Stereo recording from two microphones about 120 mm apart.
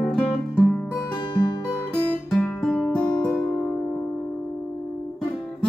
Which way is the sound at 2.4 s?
5° left (ahead or behind).